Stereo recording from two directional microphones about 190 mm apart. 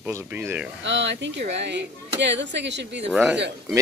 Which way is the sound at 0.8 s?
70° right (ahead or behind).